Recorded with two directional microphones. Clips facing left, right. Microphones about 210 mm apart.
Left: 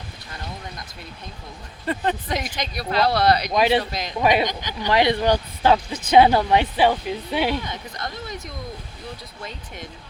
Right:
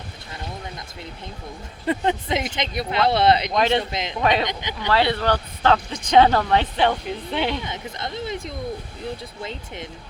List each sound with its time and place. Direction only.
1.9 s speech: 20° right (ahead or behind)
3.5 s speech: 10° left (ahead or behind)
3.8 s speech: 25° right (ahead or behind)
4.2 s speech: 10° left (ahead or behind)
7.6 s speech: 25° right (ahead or behind)